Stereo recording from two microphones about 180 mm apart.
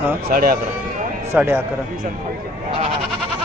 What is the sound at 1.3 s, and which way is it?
Speech, 15° right (ahead or behind).